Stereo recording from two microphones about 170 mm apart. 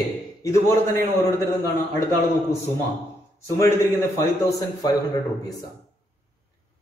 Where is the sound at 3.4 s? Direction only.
20° left (ahead or behind).